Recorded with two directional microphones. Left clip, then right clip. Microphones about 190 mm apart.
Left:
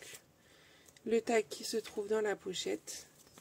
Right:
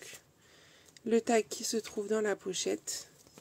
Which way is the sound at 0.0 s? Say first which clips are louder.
Right 2 dB; 20° right (ahead or behind).